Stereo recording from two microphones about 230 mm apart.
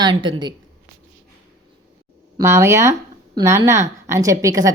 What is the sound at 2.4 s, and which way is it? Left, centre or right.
A woman's voice, centre.